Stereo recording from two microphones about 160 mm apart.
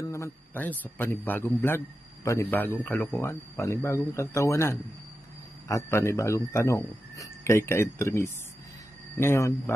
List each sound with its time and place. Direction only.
0.0 s a man's voice: 15° left (ahead or behind)